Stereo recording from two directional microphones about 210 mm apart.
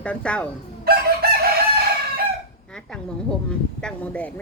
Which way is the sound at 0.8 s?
45° right (ahead or behind).